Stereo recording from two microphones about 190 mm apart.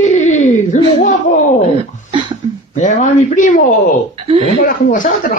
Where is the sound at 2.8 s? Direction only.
40° left (ahead or behind).